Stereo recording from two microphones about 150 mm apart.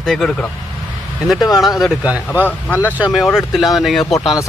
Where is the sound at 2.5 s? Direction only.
10° left (ahead or behind).